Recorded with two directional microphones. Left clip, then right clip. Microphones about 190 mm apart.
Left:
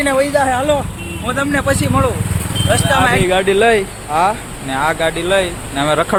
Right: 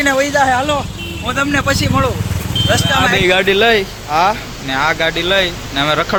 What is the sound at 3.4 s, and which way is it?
Speech, 10° left (ahead or behind).